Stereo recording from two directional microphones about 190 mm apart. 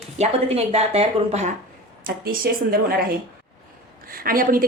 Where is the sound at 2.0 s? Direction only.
50° right (ahead or behind).